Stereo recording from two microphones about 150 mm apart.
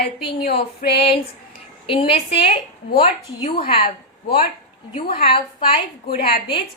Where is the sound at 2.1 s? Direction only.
40° left (ahead or behind).